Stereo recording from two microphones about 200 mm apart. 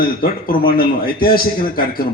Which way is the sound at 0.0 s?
45° left (ahead or behind).